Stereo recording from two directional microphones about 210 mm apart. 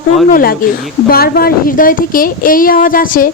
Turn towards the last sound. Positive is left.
turn(degrees=40)  # may be behind; listen again after turning